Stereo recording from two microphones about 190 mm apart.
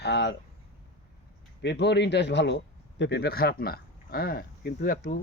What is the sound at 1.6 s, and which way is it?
Speech, 65° left (ahead or behind).